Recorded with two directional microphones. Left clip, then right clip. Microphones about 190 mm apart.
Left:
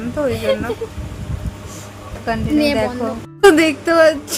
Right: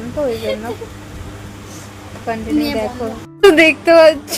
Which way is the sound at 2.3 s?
15° left (ahead or behind).